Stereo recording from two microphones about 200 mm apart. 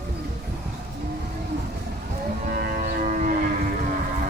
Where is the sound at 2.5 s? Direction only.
45° right (ahead or behind).